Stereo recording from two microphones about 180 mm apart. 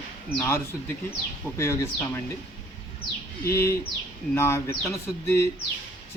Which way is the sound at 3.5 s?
15° left (ahead or behind).